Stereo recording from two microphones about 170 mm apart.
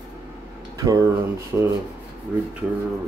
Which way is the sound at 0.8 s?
20° right (ahead or behind).